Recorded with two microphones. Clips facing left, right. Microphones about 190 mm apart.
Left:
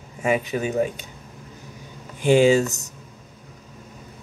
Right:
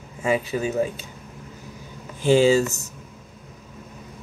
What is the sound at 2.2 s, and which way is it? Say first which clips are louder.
Speech: left 1 dB; 15° left (ahead or behind).